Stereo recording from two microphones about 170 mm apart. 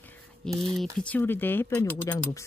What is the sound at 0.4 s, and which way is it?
Speech, 5° left (ahead or behind).